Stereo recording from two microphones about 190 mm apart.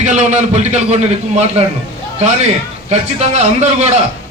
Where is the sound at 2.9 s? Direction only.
35° right (ahead or behind).